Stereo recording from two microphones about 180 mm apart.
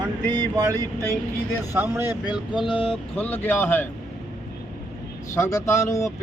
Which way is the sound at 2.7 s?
30° left (ahead or behind).